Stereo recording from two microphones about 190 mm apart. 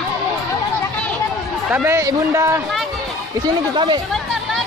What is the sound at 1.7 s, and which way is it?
Speech, 10° right (ahead or behind).